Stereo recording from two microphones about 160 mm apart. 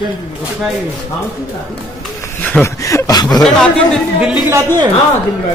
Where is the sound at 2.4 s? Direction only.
15° left (ahead or behind).